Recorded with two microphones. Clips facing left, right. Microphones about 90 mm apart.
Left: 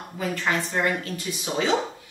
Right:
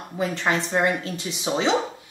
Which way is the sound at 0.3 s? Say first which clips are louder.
Right 1 dB; 25° right (ahead or behind).